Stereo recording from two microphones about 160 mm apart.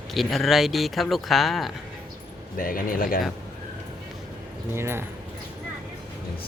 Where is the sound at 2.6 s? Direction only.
60° left (ahead or behind).